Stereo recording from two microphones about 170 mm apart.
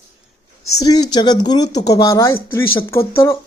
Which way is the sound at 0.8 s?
25° left (ahead or behind).